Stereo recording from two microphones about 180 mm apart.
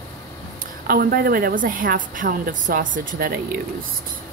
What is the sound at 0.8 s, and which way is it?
A woman's voice, 55° right (ahead or behind).